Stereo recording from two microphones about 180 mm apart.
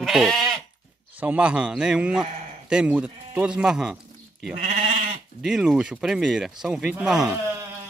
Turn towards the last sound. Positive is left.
turn(degrees=-5)  # may be behind; listen again after turning